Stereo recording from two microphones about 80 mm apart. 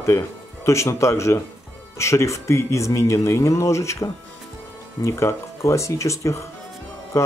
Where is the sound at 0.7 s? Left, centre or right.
Left.